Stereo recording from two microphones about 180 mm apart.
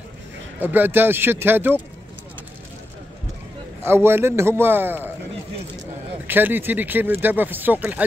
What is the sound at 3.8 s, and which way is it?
Speech, 15° right (ahead or behind).